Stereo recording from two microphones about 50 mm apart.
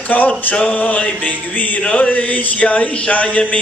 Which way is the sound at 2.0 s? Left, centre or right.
Left.